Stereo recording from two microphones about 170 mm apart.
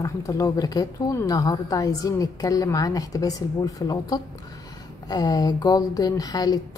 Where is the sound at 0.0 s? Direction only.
20° left (ahead or behind).